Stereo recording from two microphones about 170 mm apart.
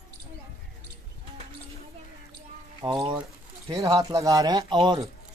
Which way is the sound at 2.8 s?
25° right (ahead or behind).